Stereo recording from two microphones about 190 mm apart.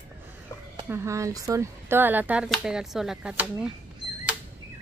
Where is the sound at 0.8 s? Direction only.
15° right (ahead or behind).